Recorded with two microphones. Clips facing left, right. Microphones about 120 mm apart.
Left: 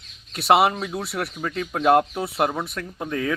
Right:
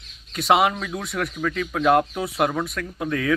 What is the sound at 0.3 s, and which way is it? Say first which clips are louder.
Speech: left 1 dB; 5° left (ahead or behind).